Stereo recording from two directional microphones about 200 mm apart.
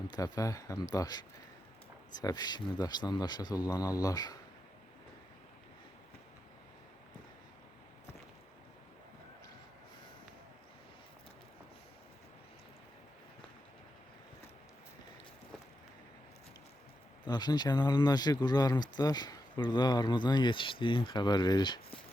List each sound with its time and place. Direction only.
0.1 s speech: 15° left (ahead or behind)
2.2 s speech: 20° left (ahead or behind)
17.2 s speech: 20° left (ahead or behind)